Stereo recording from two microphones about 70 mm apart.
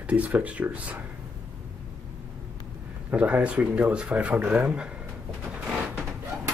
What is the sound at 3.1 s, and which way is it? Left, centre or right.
Speech, right.